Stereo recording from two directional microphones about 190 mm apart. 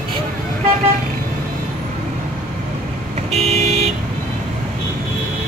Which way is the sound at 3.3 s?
35° right (ahead or behind).